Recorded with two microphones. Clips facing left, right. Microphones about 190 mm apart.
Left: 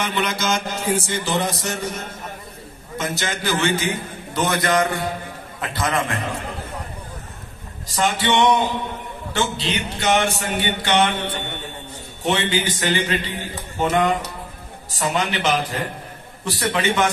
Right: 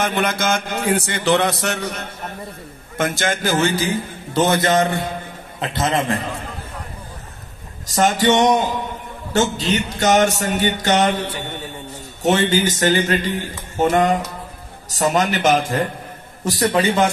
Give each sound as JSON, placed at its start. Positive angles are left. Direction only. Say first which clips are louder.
{"t": 0.0, "sound": "a sound", "louder": "right 3 dB", "side_deg": -50}
{"t": 3.0, "sound": "a man's voice", "louder": "right 5 dB", "side_deg": -50}
{"t": 7.8, "sound": "a man's voice", "louder": "right 5 dB", "side_deg": -45}